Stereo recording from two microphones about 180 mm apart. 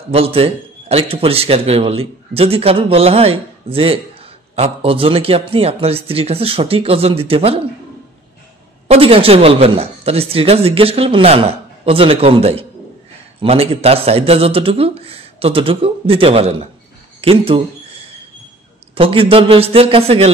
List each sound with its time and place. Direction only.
0.1 s a man's voice: 30° right (ahead or behind)
8.8 s a man's voice: 30° right (ahead or behind)
17.2 s a sound: 30° right (ahead or behind)
18.9 s a man's voice: 30° right (ahead or behind)